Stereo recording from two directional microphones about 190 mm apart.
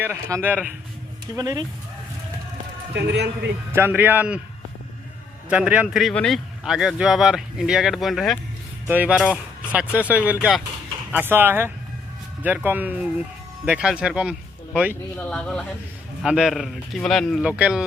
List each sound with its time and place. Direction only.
0.0 s speech: 15° right (ahead or behind)
1.4 s speech: 20° right (ahead or behind)
2.9 s a man's voice: 65° right (ahead or behind)
3.7 s speech: 10° right (ahead or behind)
5.5 s speech: 5° right (ahead or behind)
15.2 s speech: 5° left (ahead or behind)